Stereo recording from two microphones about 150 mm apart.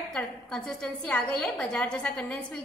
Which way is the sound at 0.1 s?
5° left (ahead or behind).